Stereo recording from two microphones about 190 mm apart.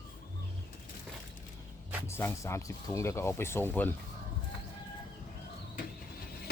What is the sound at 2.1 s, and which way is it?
Speech, 15° left (ahead or behind).